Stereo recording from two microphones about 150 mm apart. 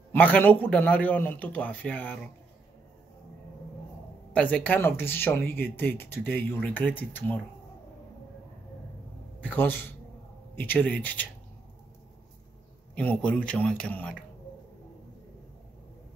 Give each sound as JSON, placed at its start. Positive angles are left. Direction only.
{"t": 0.1, "sound": "speech", "side_deg": 10}
{"t": 4.3, "sound": "speech", "side_deg": 10}
{"t": 9.4, "sound": "speech", "side_deg": 10}
{"t": 12.9, "sound": "speech", "side_deg": 10}